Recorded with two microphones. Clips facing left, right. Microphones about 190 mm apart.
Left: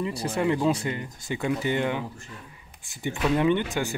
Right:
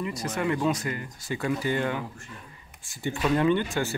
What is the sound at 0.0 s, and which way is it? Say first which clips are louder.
Speech: left 3 dB; 30° left (ahead or behind).